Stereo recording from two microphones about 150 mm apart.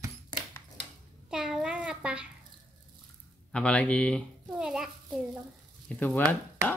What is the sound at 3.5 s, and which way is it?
Speech, 10° left (ahead or behind).